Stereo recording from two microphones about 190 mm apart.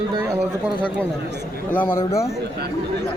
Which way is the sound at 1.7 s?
10° left (ahead or behind).